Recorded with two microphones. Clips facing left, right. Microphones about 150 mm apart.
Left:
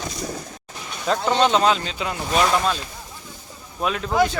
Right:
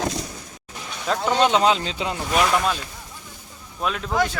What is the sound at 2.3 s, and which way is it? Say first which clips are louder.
Speech: left 1 dB; 5° right (ahead or behind).